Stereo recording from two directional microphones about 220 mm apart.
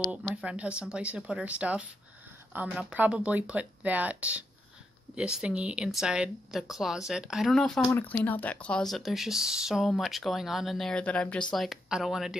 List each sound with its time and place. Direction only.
0.1 s speech: 5° right (ahead or behind)